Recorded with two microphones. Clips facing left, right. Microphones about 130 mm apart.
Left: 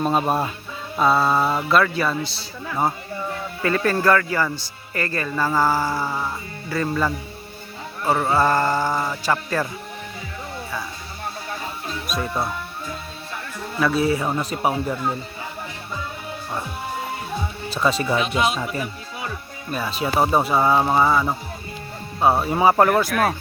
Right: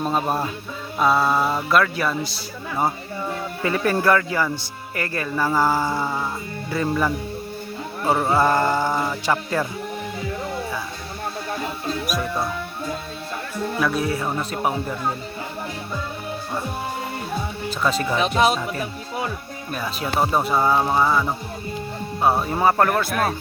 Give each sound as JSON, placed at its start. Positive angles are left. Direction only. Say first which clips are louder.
{"t": 0.0, "sound": "mantra", "louder": "left 2 dB", "side_deg": 5}
{"t": 3.6, "sound": "speech", "louder": "left 1 dB", "side_deg": -15}
{"t": 5.9, "sound": "mantra", "louder": "right 1 dB", "side_deg": 5}
{"t": 6.7, "sound": "speech", "louder": "even", "side_deg": -10}
{"t": 8.0, "sound": "mantra", "louder": "even", "side_deg": -5}
{"t": 8.4, "sound": "speech", "louder": "even", "side_deg": -15}
{"t": 8.7, "sound": "speech", "louder": "even", "side_deg": 5}
{"t": 9.3, "sound": "speech", "louder": "even", "side_deg": -10}
{"t": 13.7, "sound": "speech", "louder": "left 4 dB", "side_deg": 0}
{"t": 17.8, "sound": "speech", "louder": "left 1 dB", "side_deg": 5}
{"t": 18.2, "sound": "speech", "louder": "right 3 dB", "side_deg": -35}
{"t": 20.1, "sound": "speech", "louder": "left 2 dB", "side_deg": 10}